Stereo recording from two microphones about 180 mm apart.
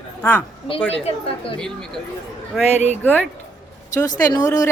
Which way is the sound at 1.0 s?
30° left (ahead or behind).